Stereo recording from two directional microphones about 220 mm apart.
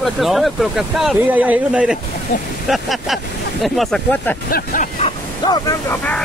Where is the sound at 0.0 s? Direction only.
Centre (ahead or behind).